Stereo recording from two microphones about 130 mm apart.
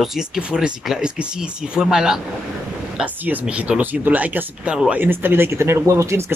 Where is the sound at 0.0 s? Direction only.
5° right (ahead or behind).